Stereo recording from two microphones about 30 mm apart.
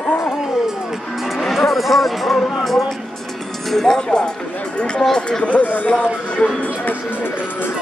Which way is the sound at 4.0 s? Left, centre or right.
Left.